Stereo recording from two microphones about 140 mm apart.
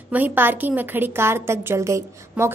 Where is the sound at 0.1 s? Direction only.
15° right (ahead or behind).